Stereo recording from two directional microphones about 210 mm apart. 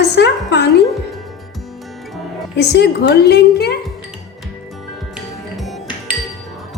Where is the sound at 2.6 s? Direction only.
55° left (ahead or behind).